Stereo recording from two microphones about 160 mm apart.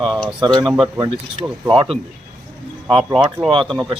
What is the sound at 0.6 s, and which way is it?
Speech, centre (ahead or behind).